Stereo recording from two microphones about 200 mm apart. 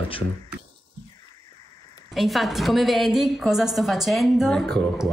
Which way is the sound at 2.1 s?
Centre (ahead or behind).